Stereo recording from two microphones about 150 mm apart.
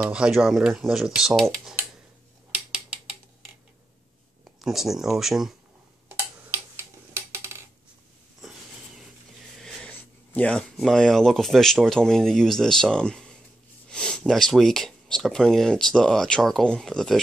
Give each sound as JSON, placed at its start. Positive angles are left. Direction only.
{"t": 0.0, "sound": "speech", "side_deg": -5}
{"t": 4.5, "sound": "speech", "side_deg": 0}
{"t": 6.0, "sound": "tick-tock", "side_deg": -15}
{"t": 8.4, "sound": "a sound", "side_deg": -5}
{"t": 9.6, "sound": "speech", "side_deg": 5}